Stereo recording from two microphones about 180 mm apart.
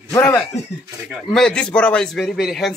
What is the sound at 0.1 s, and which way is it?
Speech, 15° left (ahead or behind).